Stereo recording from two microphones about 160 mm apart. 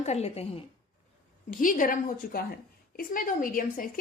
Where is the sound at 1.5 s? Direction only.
55° left (ahead or behind).